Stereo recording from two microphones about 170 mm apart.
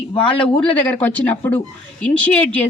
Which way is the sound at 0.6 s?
10° left (ahead or behind).